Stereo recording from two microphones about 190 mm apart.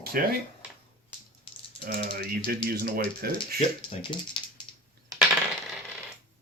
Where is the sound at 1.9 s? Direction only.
55° right (ahead or behind).